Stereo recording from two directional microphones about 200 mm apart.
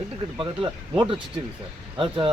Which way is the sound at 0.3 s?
25° right (ahead or behind).